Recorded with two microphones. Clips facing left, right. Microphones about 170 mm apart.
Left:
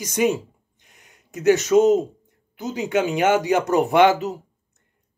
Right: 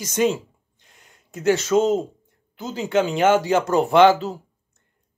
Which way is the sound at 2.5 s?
15° left (ahead or behind).